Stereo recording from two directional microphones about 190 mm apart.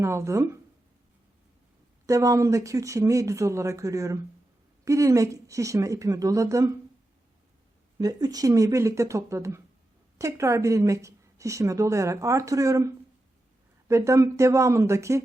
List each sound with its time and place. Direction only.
0.0 s a woman's voice: 15° right (ahead or behind)
2.0 s a woman's voice: 15° right (ahead or behind)
7.9 s a woman's voice: 20° right (ahead or behind)